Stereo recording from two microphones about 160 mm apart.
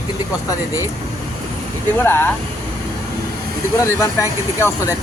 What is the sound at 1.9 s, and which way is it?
Speech, 15° left (ahead or behind).